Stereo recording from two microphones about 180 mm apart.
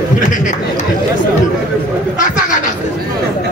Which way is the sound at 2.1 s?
45° left (ahead or behind).